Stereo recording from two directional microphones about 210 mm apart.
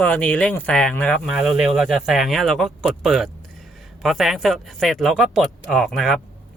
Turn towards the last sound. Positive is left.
turn(degrees=0)  # may be behind; listen again after turning